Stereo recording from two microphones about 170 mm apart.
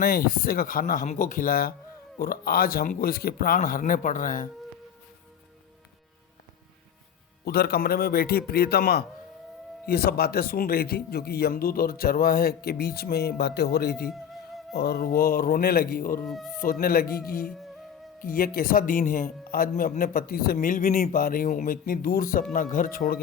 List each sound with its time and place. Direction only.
0.0 s speech: 60° left (ahead or behind)
7.4 s speech: 65° left (ahead or behind)
16.2 s speech: centre (ahead or behind)
16.6 s speech: 55° left (ahead or behind)